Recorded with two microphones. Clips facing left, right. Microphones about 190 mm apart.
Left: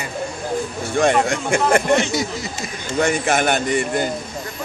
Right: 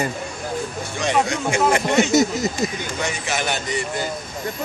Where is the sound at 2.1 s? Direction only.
45° right (ahead or behind).